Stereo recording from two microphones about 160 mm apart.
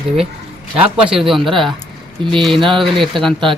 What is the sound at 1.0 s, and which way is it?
Speech, 5° right (ahead or behind).